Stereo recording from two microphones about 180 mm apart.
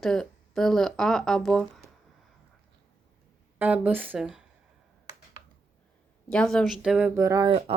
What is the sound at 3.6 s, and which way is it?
Speech, 10° right (ahead or behind).